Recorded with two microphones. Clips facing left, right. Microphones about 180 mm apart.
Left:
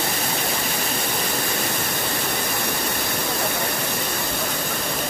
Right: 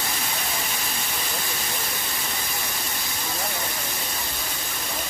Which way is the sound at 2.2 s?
65° left (ahead or behind).